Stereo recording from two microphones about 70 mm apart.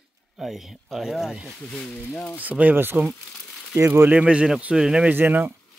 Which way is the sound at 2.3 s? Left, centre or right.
Right.